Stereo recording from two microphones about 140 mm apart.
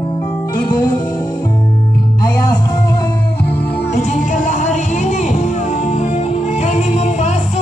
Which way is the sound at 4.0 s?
65° left (ahead or behind).